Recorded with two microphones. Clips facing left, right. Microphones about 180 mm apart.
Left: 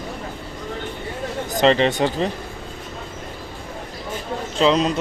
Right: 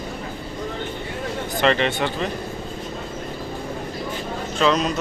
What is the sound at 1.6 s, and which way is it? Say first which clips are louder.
Speech: left 4 dB; 30° left (ahead or behind).